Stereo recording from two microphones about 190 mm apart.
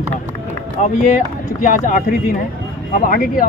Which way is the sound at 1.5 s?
45° left (ahead or behind).